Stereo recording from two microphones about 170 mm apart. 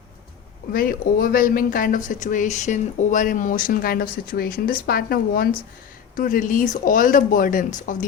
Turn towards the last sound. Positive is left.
turn(degrees=50)  # may be behind; listen again after turning